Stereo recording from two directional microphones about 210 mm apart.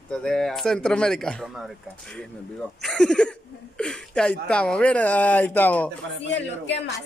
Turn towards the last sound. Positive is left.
turn(degrees=55)  # may be behind; listen again after turning